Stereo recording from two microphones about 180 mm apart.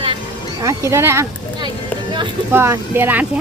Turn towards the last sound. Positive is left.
turn(degrees=-10)  # may be behind; listen again after turning